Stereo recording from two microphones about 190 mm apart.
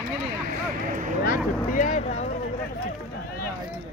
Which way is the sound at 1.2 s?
45° left (ahead or behind).